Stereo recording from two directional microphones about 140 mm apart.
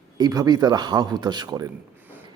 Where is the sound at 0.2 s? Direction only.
25° right (ahead or behind).